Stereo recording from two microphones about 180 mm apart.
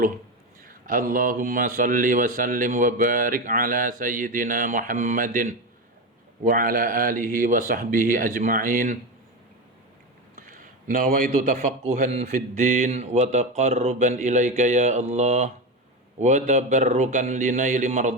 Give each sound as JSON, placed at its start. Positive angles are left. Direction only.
{"t": 0.6, "sound": "speech", "side_deg": -50}
{"t": 10.3, "sound": "a man's voice", "side_deg": -50}